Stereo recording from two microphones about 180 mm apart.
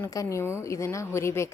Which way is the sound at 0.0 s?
15° left (ahead or behind).